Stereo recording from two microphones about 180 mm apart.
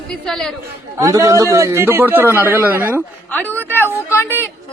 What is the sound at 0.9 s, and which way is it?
A man's voice, 20° right (ahead or behind).